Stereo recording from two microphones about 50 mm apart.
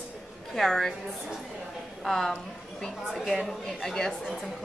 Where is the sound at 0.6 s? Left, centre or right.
Centre.